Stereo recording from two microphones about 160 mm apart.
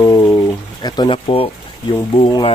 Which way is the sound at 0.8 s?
30° left (ahead or behind).